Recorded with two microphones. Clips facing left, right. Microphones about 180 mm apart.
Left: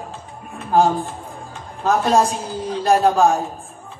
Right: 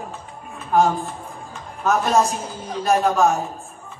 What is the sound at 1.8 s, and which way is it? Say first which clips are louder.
A man's voice: left 2 dB; 30° left (ahead or behind).